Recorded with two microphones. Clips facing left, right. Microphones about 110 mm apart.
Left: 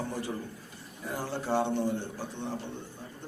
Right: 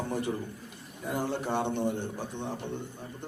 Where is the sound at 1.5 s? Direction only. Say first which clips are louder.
Left 5 dB; 20° right (ahead or behind).